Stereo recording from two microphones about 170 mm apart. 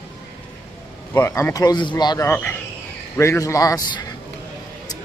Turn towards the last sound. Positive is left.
turn(degrees=20)  # may be behind; listen again after turning